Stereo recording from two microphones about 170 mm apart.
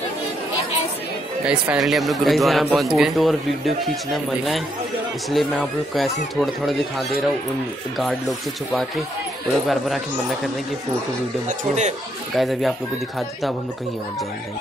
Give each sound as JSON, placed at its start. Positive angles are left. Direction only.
{"t": 1.4, "sound": "speech", "side_deg": -5}
{"t": 11.4, "sound": "speech", "side_deg": -45}
{"t": 12.4, "sound": "speech", "side_deg": 0}